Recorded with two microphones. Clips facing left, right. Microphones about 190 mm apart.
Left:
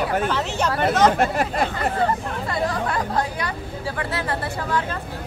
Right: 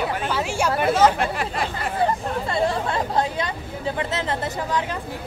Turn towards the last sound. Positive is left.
turn(degrees=-20)  # may be behind; listen again after turning